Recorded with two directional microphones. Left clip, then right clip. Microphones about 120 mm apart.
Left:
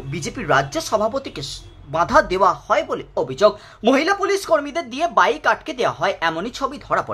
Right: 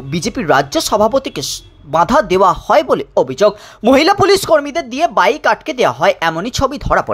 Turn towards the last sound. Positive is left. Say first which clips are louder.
# right 7 dB
turn(degrees=-45)  # may be behind; listen again after turning